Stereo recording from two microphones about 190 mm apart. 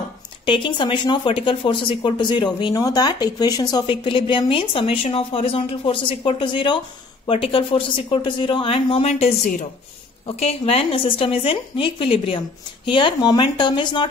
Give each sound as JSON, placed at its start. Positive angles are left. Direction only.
{"t": 0.5, "sound": "speech", "side_deg": 25}